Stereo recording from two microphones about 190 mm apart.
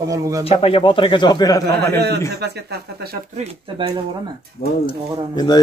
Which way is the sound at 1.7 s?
60° right (ahead or behind).